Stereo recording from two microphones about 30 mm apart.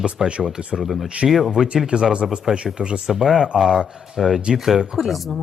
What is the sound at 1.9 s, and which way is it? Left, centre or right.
Speech, right.